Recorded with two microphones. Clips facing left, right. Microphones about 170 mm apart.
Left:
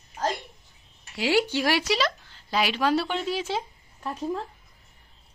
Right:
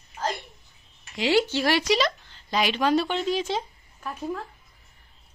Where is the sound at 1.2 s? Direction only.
10° left (ahead or behind).